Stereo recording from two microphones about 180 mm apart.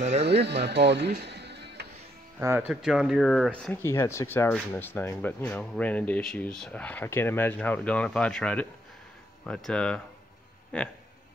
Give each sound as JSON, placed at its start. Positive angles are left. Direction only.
{"t": 0.0, "sound": "speech", "side_deg": -35}
{"t": 0.3, "sound": "speech", "side_deg": -70}
{"t": 2.3, "sound": "speech", "side_deg": -10}